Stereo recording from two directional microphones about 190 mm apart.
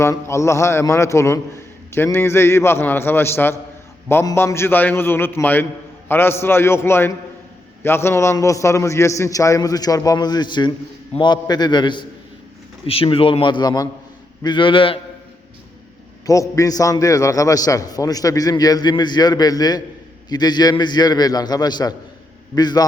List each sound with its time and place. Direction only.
0.0 s a man's voice: 15° left (ahead or behind)
16.2 s a man's voice: 15° left (ahead or behind)